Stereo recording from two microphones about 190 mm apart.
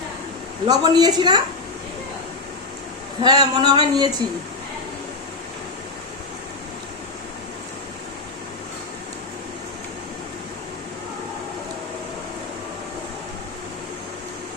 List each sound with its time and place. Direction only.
0.7 s speech: 20° right (ahead or behind)
3.2 s speech: 20° right (ahead or behind)